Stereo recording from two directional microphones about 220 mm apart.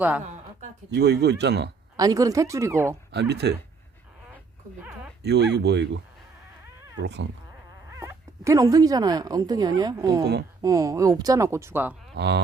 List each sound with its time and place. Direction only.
0.9 s speech: 50° right (ahead or behind)
2.0 s speech: 15° right (ahead or behind)
3.1 s speech: 45° right (ahead or behind)
4.8 s a sound: 5° right (ahead or behind)
5.2 s speech: 50° right (ahead or behind)
7.0 s speech: 50° right (ahead or behind)
7.9 s speech: 15° right (ahead or behind)
12.1 s speech: 50° right (ahead or behind)